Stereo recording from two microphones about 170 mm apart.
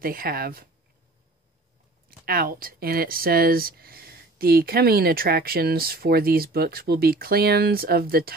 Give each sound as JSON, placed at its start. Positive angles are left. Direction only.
{"t": 0.0, "sound": "speech", "side_deg": -60}
{"t": 2.0, "sound": "speech", "side_deg": -60}